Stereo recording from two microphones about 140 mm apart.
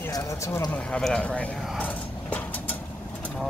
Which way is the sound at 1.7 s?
10° left (ahead or behind).